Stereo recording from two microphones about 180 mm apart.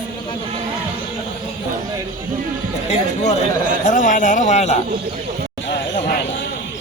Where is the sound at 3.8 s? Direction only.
45° left (ahead or behind).